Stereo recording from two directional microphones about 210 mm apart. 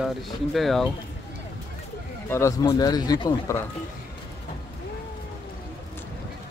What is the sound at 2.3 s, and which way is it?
Speech, 15° left (ahead or behind).